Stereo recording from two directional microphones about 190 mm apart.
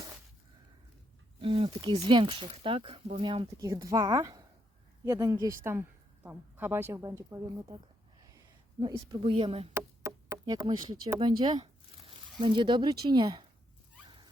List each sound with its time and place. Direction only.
1.4 s speech: 30° right (ahead or behind)
8.8 s speech: 25° right (ahead or behind)
10.0 s a sound: 15° right (ahead or behind)
10.7 s speech: 20° right (ahead or behind)